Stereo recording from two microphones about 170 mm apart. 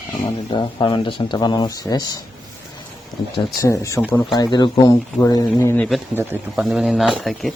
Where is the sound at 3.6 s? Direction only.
15° left (ahead or behind).